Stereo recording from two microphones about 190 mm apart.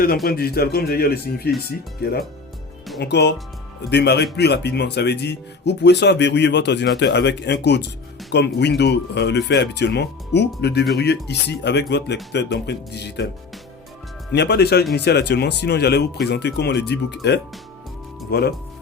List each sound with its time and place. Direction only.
0.3 s speech: 55° left (ahead or behind)
14.3 s speech: 60° left (ahead or behind)
18.3 s speech: 60° left (ahead or behind)